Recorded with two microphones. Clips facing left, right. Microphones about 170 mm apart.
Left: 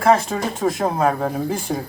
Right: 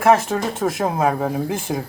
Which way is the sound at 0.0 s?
10° right (ahead or behind).